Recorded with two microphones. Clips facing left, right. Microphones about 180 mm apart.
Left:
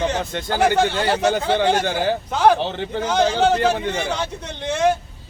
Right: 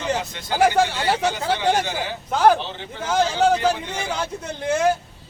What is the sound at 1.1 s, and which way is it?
Speech, 55° left (ahead or behind).